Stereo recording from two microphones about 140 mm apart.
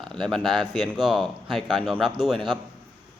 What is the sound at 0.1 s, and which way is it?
A man's voice, centre (ahead or behind).